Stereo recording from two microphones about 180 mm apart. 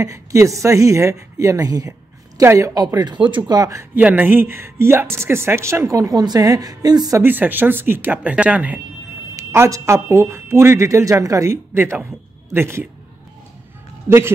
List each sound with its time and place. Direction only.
0.0 s a woman's voice: 15° right (ahead or behind)
14.0 s a man's voice: 15° right (ahead or behind)